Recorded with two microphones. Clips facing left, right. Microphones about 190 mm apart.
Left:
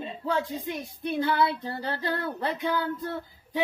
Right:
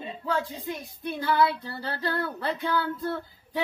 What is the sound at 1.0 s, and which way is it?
Child singing, 20° left (ahead or behind).